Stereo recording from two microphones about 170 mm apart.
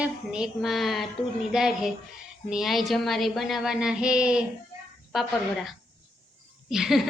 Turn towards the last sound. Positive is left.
turn(degrees=0)  # may be behind; listen again after turning